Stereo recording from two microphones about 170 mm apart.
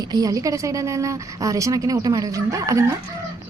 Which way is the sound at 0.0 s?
20° right (ahead or behind).